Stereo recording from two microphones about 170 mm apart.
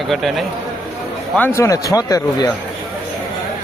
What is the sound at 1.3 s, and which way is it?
Speech, 15° left (ahead or behind).